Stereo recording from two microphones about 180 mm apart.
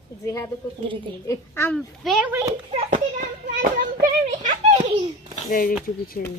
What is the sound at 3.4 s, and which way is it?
A child's voice, 50° right (ahead or behind).